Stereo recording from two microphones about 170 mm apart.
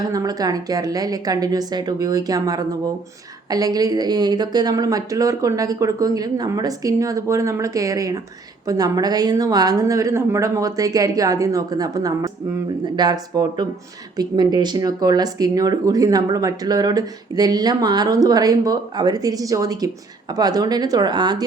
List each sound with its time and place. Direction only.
0.0 s speech: 20° right (ahead or behind)